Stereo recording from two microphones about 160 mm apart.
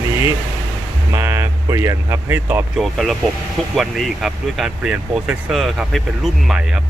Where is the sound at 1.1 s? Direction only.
15° right (ahead or behind).